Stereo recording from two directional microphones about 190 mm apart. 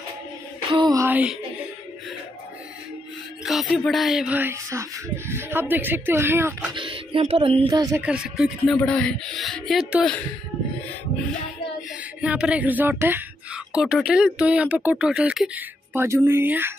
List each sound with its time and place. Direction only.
0.7 s music: 25° right (ahead or behind)
3.4 s speech: centre (ahead or behind)
6.7 s a sound: 25° right (ahead or behind)
7.7 s speech: 15° right (ahead or behind)
8.0 s speech: 5° right (ahead or behind)
8.6 s speech: 5° left (ahead or behind)
12.2 s speech: 5° right (ahead or behind)